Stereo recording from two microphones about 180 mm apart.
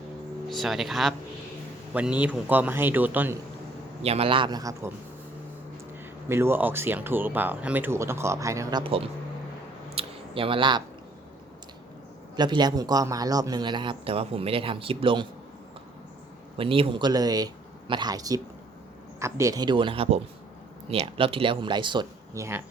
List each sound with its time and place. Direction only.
0.4 s speech: centre (ahead or behind)
4.0 s a man's voice: 35° right (ahead or behind)
6.2 s speech: 15° right (ahead or behind)
8.8 s speech: 30° right (ahead or behind)
9.9 s a sound: 30° right (ahead or behind)
12.4 s a man's voice: 25° right (ahead or behind)
16.6 s a man's voice: 30° right (ahead or behind)